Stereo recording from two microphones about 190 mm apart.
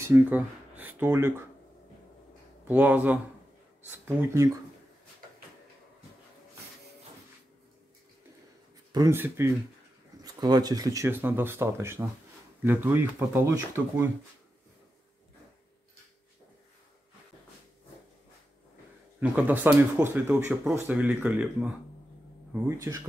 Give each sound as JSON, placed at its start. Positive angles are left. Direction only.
{"t": 0.0, "sound": "speech", "side_deg": -10}
{"t": 2.7, "sound": "speech", "side_deg": -10}
{"t": 8.9, "sound": "speech", "side_deg": -15}
{"t": 19.1, "sound": "speech", "side_deg": -10}